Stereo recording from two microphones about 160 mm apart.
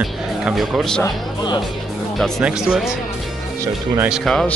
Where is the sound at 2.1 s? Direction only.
Centre (ahead or behind).